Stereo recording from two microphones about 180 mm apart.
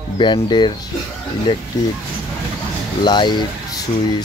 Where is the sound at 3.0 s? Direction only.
25° left (ahead or behind).